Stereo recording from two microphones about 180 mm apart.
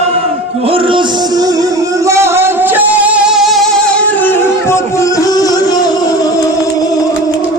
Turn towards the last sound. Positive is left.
turn(degrees=20)  # may be behind; listen again after turning